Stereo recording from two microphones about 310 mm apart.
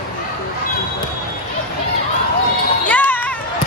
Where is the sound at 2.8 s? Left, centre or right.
Centre.